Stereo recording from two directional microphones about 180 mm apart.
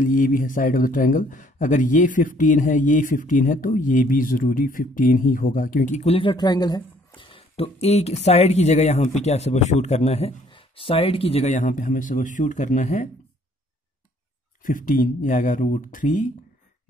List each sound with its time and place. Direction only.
0.0 s speech: 50° left (ahead or behind)
14.6 s speech: 50° left (ahead or behind)